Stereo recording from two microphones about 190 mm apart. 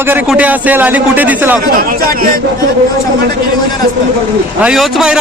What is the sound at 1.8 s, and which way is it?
Speech, 50° right (ahead or behind).